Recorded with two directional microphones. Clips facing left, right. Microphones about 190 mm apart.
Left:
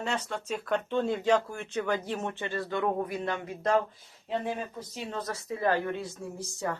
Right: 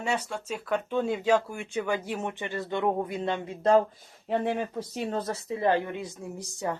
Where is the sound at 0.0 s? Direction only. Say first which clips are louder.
Right 2 dB; 10° right (ahead or behind); by 3.8 s 30° right (ahead or behind).